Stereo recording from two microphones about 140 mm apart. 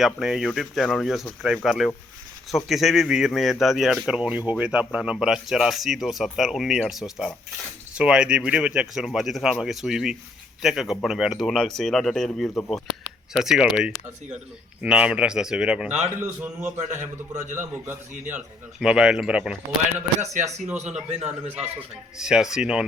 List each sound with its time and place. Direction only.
0.0 s speech: 5° right (ahead or behind)
16.8 s a man's voice: 60° right (ahead or behind)
18.3 s speech: 5° right (ahead or behind)
20.2 s a man's voice: 55° right (ahead or behind)
22.2 s speech: 5° right (ahead or behind)